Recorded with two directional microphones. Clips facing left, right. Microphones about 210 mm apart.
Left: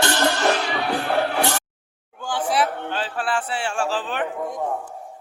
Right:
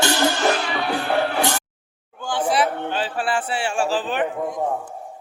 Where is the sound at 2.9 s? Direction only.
5° right (ahead or behind).